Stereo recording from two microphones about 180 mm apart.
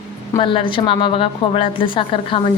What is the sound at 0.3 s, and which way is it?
A woman's voice, 30° left (ahead or behind).